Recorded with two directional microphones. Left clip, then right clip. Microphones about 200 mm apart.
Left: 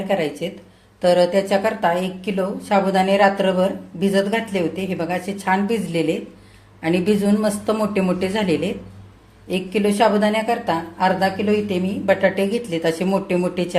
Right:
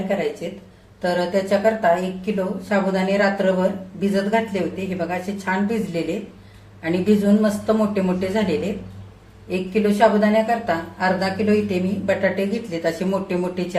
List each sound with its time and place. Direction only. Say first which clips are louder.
0.4 s a woman's voice: left 3 dB; 45° left (ahead or behind)